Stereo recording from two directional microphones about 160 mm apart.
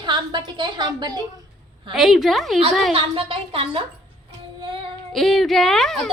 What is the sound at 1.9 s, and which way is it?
Speech, centre (ahead or behind).